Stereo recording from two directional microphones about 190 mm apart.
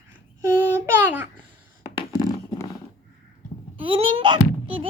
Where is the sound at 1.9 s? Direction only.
20° left (ahead or behind).